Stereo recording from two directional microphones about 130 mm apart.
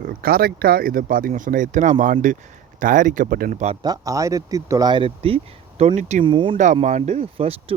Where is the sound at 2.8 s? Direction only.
90° right; by 3.7 s 70° right (ahead or behind).